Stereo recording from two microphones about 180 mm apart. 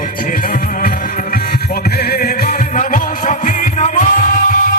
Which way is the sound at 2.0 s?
55° left (ahead or behind).